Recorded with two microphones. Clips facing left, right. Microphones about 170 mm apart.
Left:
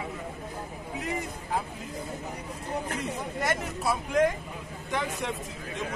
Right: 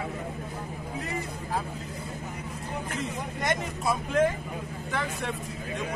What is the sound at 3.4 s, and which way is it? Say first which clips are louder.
Speech: right 1 dB; 5° left (ahead or behind).